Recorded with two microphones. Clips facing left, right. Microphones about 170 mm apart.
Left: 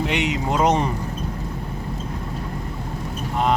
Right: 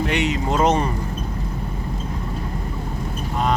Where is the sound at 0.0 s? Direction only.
15° left (ahead or behind).